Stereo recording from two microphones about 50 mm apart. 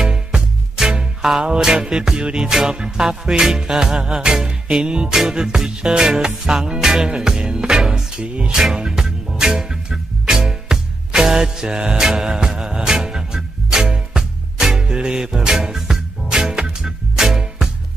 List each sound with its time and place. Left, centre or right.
0.0 s music: centre